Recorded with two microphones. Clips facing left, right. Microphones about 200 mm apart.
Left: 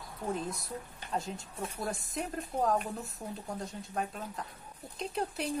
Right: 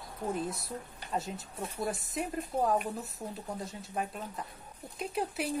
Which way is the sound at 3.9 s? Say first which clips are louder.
Right 1 dB; 5° right (ahead or behind).